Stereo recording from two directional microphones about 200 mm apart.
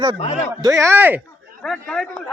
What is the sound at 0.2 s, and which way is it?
Speech, 30° left (ahead or behind).